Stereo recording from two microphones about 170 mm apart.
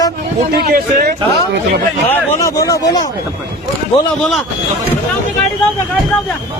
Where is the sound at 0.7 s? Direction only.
50° right (ahead or behind).